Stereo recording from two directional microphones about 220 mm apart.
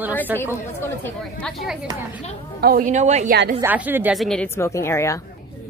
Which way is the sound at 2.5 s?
45° right (ahead or behind).